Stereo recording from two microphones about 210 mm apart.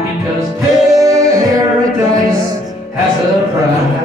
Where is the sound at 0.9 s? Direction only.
15° right (ahead or behind).